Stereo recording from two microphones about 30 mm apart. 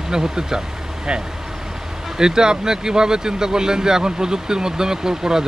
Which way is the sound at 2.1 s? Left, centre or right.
Right.